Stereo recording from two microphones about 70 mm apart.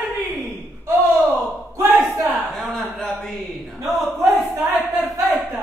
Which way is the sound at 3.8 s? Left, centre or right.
Centre.